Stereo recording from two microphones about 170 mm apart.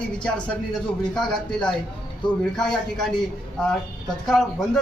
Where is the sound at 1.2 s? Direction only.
25° left (ahead or behind).